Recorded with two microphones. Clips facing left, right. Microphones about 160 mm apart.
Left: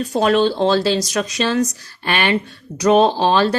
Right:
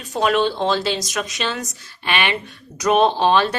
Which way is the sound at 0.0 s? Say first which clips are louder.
Left 3 dB; 35° left (ahead or behind).